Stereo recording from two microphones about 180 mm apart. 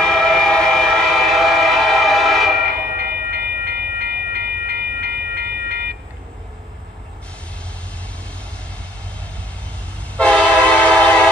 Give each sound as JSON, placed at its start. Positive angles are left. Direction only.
{"t": 0.0, "sound": "train", "side_deg": 5}
{"t": 3.0, "sound": "train", "side_deg": -60}
{"t": 10.1, "sound": "train", "side_deg": 5}